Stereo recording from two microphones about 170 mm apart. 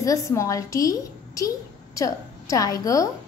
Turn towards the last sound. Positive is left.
turn(degrees=20)  # may be behind; listen again after turning